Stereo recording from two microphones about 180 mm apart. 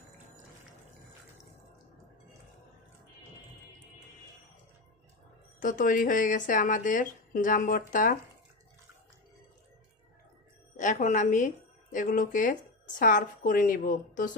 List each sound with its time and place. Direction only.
5.6 s speech: 45° left (ahead or behind)
10.8 s a woman's voice: 45° left (ahead or behind)